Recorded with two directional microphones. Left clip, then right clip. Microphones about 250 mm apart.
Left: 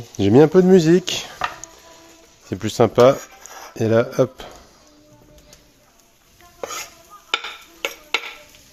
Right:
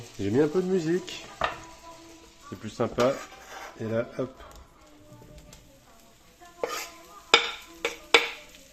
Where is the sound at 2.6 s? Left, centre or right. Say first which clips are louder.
Left 12 dB; left.